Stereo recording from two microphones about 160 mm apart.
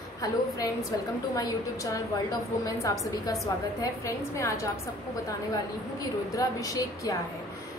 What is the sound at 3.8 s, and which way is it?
Speech, 20° left (ahead or behind).